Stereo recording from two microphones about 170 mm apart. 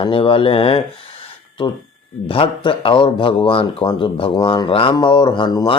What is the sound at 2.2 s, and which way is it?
Speech, 30° left (ahead or behind).